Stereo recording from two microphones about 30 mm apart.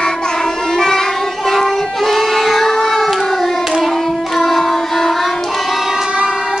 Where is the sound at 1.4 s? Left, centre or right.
Centre.